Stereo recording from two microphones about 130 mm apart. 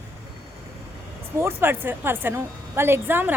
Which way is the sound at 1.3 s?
20° right (ahead or behind).